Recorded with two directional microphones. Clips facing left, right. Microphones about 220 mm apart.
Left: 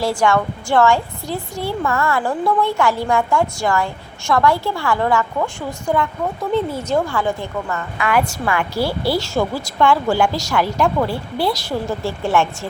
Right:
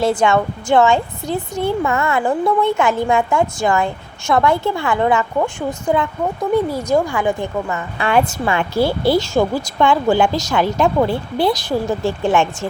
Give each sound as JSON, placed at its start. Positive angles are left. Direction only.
{"t": 0.0, "sound": "a woman's voice", "side_deg": -20}
{"t": 7.9, "sound": "speech", "side_deg": -30}